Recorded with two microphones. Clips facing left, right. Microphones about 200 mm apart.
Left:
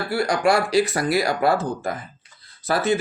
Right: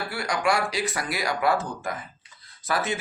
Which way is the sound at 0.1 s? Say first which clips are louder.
Left 7 dB; 35° left (ahead or behind).